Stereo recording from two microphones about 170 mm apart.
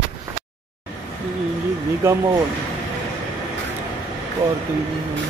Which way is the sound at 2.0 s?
15° right (ahead or behind).